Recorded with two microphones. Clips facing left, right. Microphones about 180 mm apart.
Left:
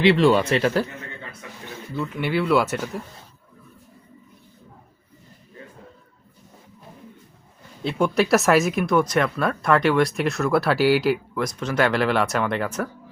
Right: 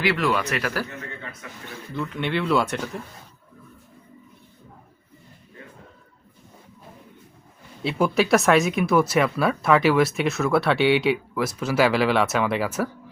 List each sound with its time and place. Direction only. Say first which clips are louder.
0.0 s speech: left 6 dB; 25° left (ahead or behind)
2.0 s speech: left 2 dB; 5° left (ahead or behind)
7.9 s speech: even; 5° right (ahead or behind)